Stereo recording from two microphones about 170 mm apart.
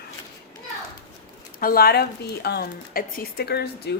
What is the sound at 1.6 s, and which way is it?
Speech, 60° left (ahead or behind).